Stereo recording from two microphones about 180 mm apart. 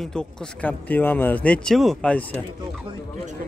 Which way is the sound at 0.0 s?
5° left (ahead or behind).